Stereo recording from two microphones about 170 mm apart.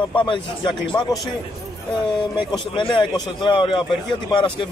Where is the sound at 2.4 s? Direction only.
30° left (ahead or behind).